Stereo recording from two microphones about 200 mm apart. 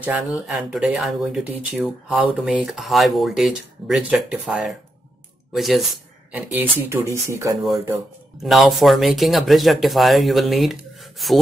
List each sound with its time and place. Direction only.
0.0 s speech: 5° right (ahead or behind)
6.3 s speech: 10° right (ahead or behind)
8.4 s speech: centre (ahead or behind)